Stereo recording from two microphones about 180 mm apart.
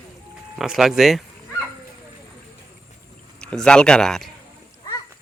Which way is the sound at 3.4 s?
5° left (ahead or behind).